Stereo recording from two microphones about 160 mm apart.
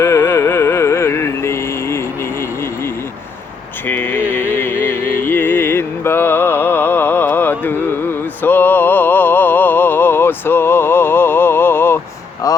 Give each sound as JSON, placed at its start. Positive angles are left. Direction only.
{"t": 0.0, "sound": "music", "side_deg": 15}
{"t": 3.8, "sound": "music", "side_deg": 10}